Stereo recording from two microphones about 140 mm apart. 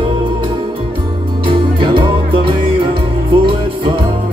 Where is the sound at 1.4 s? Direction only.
35° right (ahead or behind).